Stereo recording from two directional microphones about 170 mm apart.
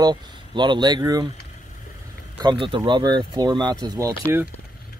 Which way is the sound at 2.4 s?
30° right (ahead or behind).